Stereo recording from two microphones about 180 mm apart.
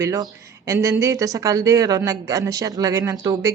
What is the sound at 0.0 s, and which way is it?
A woman's voice, 15° right (ahead or behind).